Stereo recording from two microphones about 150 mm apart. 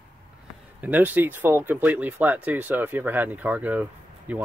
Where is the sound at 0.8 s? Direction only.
10° right (ahead or behind).